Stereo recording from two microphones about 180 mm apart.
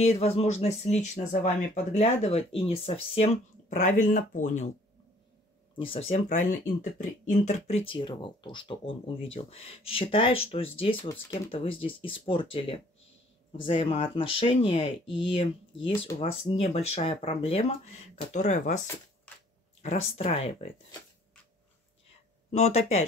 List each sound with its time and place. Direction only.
0.0 s speech: 35° left (ahead or behind)
3.7 s speech: 45° left (ahead or behind)
5.8 s speech: 30° left (ahead or behind)
19.8 s speech: 35° left (ahead or behind)
22.5 s speech: 35° left (ahead or behind)